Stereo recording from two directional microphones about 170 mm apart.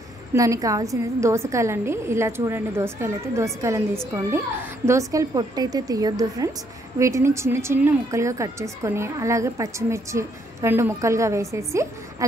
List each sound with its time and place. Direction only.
0.3 s a woman's voice: 20° right (ahead or behind)